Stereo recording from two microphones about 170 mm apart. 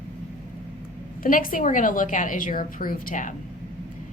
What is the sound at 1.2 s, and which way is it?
A woman's voice, 55° left (ahead or behind).